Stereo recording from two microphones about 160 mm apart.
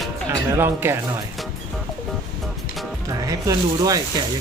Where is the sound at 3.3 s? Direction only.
20° right (ahead or behind).